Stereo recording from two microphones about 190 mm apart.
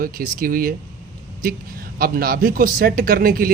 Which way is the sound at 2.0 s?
50° right (ahead or behind).